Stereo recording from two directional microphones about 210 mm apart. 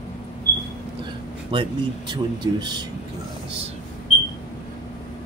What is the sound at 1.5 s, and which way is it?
Speech, 20° right (ahead or behind).